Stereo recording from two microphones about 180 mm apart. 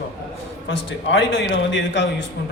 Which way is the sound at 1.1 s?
90° left.